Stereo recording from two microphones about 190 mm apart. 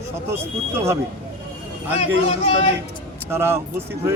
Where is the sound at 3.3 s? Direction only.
10° right (ahead or behind).